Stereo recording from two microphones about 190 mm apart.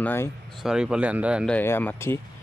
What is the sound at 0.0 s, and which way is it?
Speech, 10° left (ahead or behind).